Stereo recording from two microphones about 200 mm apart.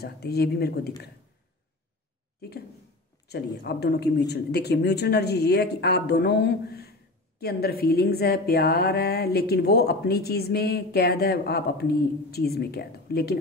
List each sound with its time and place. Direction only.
0.0 s a woman's voice: 55° left (ahead or behind)
3.3 s a woman's voice: 55° left (ahead or behind)